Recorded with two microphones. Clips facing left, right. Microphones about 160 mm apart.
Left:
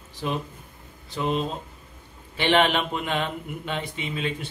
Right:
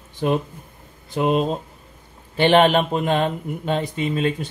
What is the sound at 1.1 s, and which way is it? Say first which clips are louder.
Speech: right 7 dB; 50° right (ahead or behind).